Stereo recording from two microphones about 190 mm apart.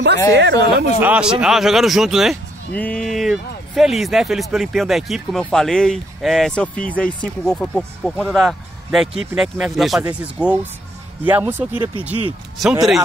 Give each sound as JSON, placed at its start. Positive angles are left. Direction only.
{"t": 0.3, "sound": "speech", "side_deg": -65}
{"t": 1.0, "sound": "speech", "side_deg": -5}